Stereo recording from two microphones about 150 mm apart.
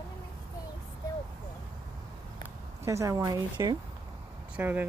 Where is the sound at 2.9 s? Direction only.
20° right (ahead or behind).